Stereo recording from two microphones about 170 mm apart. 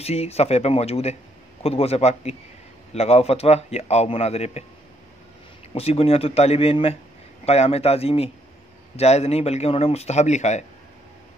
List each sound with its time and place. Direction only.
0.0 s a man's voice: 35° left (ahead or behind)
5.8 s a man's voice: 35° left (ahead or behind)